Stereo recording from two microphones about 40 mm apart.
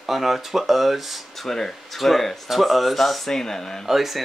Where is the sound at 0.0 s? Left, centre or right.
Centre.